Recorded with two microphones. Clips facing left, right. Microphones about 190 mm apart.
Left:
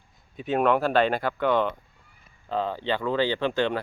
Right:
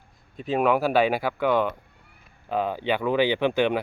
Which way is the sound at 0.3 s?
Centre (ahead or behind).